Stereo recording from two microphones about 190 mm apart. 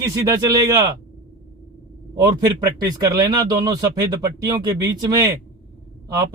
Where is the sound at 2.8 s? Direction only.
20° right (ahead or behind).